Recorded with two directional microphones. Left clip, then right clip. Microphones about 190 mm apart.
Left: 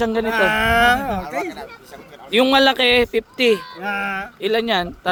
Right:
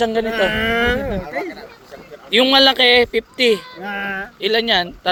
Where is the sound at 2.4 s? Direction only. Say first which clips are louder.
Right 3 dB; 20° left (ahead or behind).